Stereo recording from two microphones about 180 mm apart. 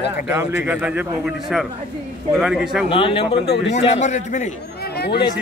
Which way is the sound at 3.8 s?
40° left (ahead or behind).